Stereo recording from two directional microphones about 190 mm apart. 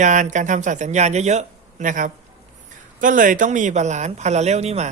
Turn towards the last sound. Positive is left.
turn(degrees=-35)  # may be behind; listen again after turning